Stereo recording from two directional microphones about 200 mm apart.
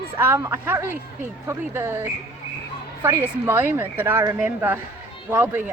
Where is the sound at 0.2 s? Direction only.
15° right (ahead or behind).